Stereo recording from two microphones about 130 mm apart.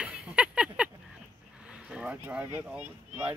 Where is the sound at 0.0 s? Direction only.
10° right (ahead or behind).